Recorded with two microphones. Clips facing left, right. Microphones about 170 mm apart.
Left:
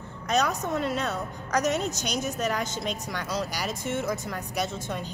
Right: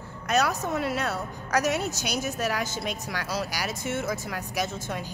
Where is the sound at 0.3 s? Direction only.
5° right (ahead or behind).